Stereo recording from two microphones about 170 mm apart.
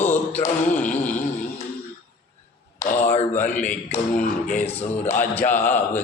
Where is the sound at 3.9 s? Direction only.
50° left (ahead or behind).